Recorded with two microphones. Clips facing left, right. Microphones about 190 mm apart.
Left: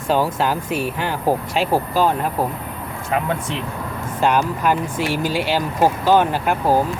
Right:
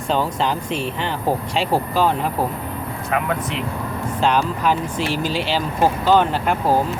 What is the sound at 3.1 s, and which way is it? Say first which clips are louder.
Speech: left 1 dB; 30° left (ahead or behind).